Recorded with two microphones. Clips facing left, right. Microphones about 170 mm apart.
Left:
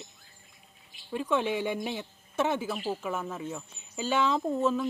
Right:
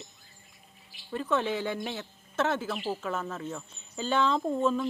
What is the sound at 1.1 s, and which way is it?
Speech, 10° left (ahead or behind).